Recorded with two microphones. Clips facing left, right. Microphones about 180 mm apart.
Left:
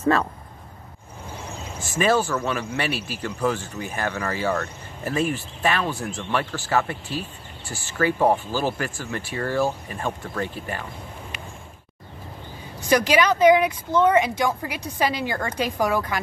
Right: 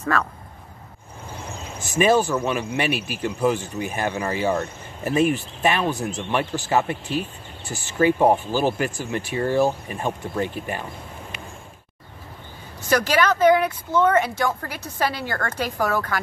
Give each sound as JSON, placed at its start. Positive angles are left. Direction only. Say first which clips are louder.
{"t": 0.0, "sound": "speech", "louder": "left 3 dB", "side_deg": 25}
{"t": 1.8, "sound": "speech", "louder": "right 3 dB", "side_deg": -15}
{"t": 12.9, "sound": "a woman's voice", "louder": "left 1 dB", "side_deg": 15}